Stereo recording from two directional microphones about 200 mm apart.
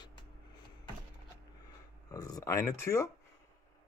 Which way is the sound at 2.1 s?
20° left (ahead or behind).